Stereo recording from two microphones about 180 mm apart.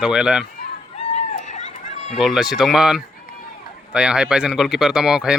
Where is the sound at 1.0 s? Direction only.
40° left (ahead or behind).